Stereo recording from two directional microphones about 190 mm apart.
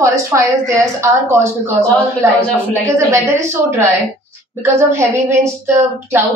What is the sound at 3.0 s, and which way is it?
A woman's voice, 15° right (ahead or behind).